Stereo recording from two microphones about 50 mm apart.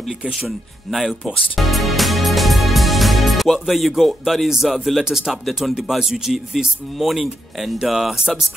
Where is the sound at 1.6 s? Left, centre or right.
Centre.